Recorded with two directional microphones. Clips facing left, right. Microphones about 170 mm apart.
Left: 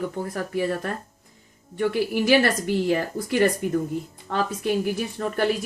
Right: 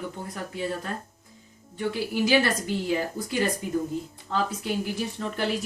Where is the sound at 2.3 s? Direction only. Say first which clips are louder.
Left 3 dB; 70° left (ahead or behind).